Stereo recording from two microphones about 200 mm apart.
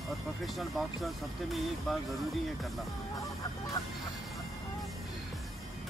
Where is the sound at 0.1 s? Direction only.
Centre (ahead or behind).